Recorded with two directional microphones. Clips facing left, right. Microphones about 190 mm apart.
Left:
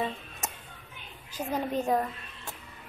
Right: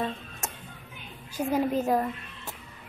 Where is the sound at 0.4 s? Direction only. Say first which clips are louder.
Even; centre (ahead or behind).